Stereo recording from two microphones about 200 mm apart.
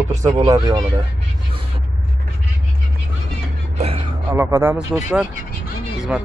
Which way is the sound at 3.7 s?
30° right (ahead or behind).